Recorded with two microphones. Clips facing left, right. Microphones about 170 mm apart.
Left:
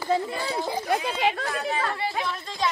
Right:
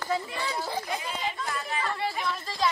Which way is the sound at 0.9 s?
70° left (ahead or behind).